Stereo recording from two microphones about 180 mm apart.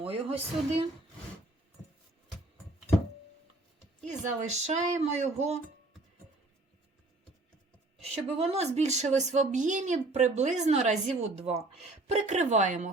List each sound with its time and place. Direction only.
0.0 s speech: 30° right (ahead or behind)
4.0 s a woman's voice: 40° right (ahead or behind)
8.1 s a woman's voice: 35° right (ahead or behind)